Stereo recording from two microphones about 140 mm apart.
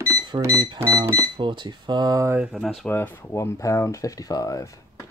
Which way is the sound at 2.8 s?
15° left (ahead or behind).